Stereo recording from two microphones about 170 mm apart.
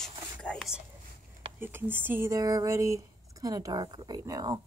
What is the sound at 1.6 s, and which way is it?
Speech, 10° right (ahead or behind).